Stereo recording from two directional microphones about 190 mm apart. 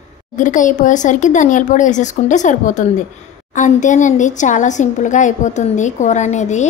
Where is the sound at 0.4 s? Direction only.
40° left (ahead or behind).